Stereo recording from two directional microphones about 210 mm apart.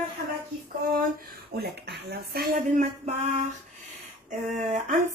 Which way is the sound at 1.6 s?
50° right (ahead or behind).